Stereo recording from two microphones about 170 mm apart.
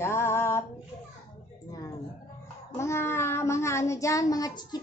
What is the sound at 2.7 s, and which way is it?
Child singing, 15° left (ahead or behind).